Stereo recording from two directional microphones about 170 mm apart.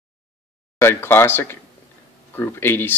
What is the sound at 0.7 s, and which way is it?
Speech, 15° left (ahead or behind).